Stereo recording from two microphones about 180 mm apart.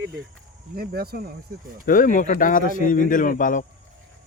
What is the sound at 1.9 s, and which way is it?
Speech, 45° left (ahead or behind).